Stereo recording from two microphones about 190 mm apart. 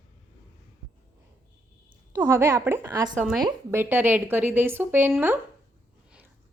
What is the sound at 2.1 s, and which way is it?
A woman's voice, 15° right (ahead or behind).